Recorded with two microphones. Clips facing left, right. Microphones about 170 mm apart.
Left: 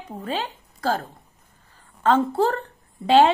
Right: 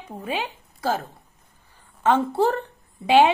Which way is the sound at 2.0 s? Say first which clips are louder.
Even; 10° right (ahead or behind).